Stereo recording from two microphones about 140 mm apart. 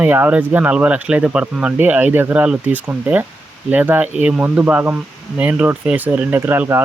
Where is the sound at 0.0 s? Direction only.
10° right (ahead or behind).